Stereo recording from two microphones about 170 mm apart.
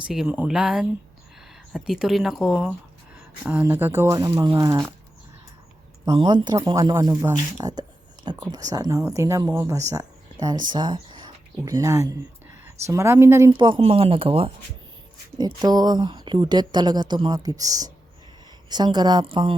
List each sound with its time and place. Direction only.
0.1 s speech: 5° right (ahead or behind)
6.1 s a woman's voice: 25° right (ahead or behind)
13.5 s a woman's voice: 30° right (ahead or behind)